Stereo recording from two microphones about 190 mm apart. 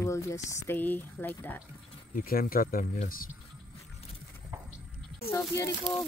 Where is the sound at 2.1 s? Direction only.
50° left (ahead or behind).